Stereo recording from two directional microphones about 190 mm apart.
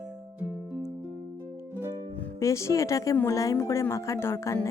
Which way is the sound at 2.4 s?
15° left (ahead or behind).